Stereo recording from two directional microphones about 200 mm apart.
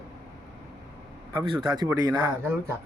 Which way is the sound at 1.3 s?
20° right (ahead or behind).